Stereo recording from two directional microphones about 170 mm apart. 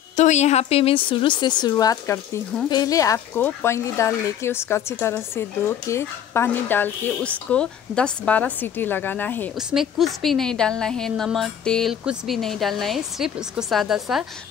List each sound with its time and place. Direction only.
0.1 s a woman's voice: 45° left (ahead or behind); by 9.5 s 10° left (ahead or behind)
9.6 s a woman's voice: 5° right (ahead or behind)